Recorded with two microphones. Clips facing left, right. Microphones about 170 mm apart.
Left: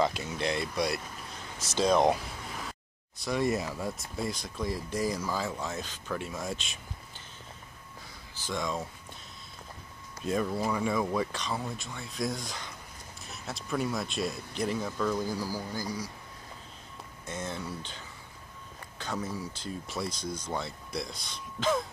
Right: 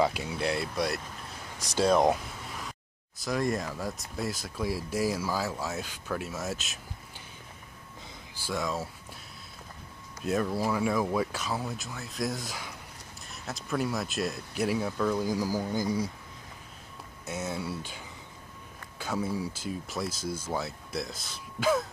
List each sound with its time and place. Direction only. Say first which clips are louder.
0.0 s speech: right 1 dB; 10° right (ahead or behind)
1.6 s speech: right 1 dB; 15° right (ahead or behind)
1.9 s speech: right 1 dB; centre (ahead or behind)
3.2 s speech: even; centre (ahead or behind)
8.4 s speech: right 1 dB; 5° right (ahead or behind)
10.2 s speech: right 1 dB; 5° right (ahead or behind); by 16.1 s 25° right (ahead or behind)
17.3 s speech: right 3 dB; 10° right (ahead or behind)